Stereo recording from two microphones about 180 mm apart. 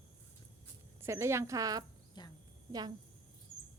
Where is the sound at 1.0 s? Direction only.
15° right (ahead or behind).